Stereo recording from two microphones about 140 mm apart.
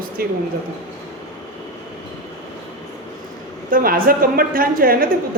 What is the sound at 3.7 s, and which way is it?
Speech, 90° right.